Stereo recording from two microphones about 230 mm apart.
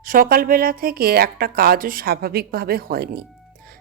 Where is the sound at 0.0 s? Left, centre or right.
Right.